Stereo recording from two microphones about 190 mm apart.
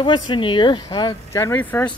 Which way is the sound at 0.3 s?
25° left (ahead or behind).